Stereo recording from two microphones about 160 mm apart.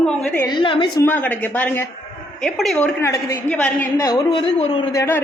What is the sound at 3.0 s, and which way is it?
Speech, 15° left (ahead or behind).